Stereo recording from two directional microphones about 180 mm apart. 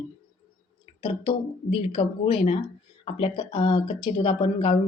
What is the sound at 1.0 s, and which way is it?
A woman's voice, 30° left (ahead or behind).